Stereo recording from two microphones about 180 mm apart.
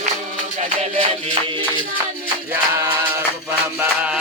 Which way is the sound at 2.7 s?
15° right (ahead or behind).